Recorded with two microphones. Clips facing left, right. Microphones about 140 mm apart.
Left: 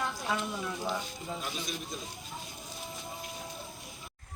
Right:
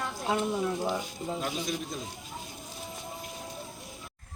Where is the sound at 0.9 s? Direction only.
15° right (ahead or behind).